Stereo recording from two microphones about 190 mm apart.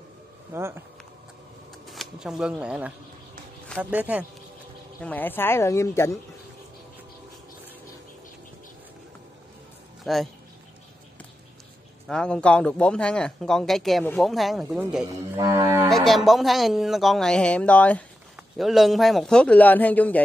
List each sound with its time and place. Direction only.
0.5 s speech: 15° right (ahead or behind)
1.9 s speech: centre (ahead or behind)
3.9 s speech: 10° right (ahead or behind)
5.0 s a woman's voice: 10° left (ahead or behind)
10.0 s a man's voice: centre (ahead or behind)
12.1 s a man's voice: 5° left (ahead or behind)
15.3 s music: 20° right (ahead or behind)
15.9 s a man's voice: centre (ahead or behind)